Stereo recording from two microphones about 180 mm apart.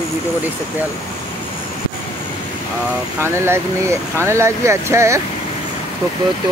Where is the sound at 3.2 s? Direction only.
15° right (ahead or behind).